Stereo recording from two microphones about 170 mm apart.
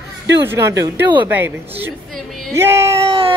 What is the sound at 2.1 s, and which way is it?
Speech, centre (ahead or behind).